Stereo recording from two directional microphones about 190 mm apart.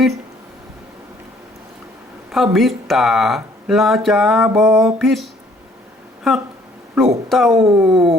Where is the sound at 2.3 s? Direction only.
Centre (ahead or behind).